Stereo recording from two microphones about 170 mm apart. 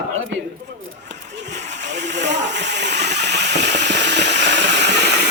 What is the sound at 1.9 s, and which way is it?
Hiss, 90° right.